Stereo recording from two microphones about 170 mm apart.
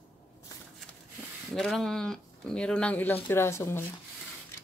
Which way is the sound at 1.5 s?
Centre (ahead or behind).